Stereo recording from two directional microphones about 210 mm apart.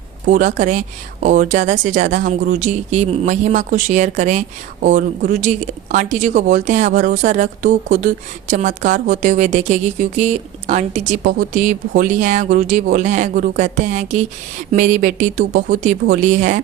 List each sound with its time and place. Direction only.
0.3 s a woman's voice: 35° right (ahead or behind)